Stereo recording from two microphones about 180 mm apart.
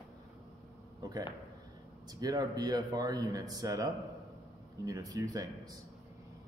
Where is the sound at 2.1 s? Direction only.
20° right (ahead or behind).